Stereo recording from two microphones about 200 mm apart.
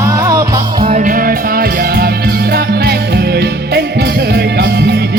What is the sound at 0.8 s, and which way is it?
Music, 40° right (ahead or behind).